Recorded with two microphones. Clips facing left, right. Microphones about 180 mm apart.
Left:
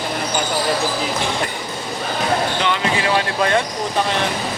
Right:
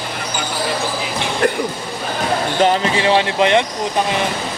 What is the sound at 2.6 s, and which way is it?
Speech, 30° right (ahead or behind).